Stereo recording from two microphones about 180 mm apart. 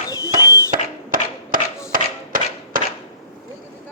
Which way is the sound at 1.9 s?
50° right (ahead or behind).